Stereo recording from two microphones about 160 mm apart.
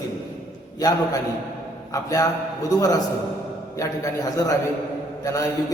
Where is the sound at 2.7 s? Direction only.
20° left (ahead or behind).